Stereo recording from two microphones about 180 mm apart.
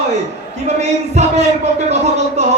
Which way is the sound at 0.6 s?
40° right (ahead or behind).